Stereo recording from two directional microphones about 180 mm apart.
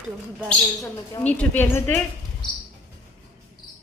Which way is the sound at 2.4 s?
25° left (ahead or behind).